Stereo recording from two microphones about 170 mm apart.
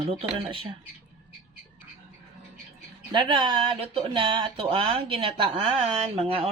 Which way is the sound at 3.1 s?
30° right (ahead or behind).